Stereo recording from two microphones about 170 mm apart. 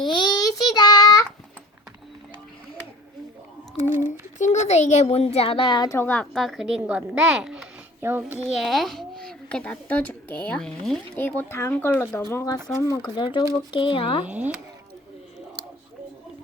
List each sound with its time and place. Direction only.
0.0 s child singing: 30° left (ahead or behind)
4.4 s a child's voice: 45° left (ahead or behind); by 6.0 s 25° left (ahead or behind)
6.0 s a child's voice: 10° left (ahead or behind)
6.3 s a child's voice: centre (ahead or behind); by 14.3 s 30° left (ahead or behind)
14.3 s speech: 10° right (ahead or behind)